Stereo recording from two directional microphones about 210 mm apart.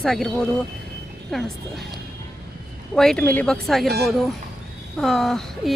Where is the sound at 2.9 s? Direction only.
5° left (ahead or behind).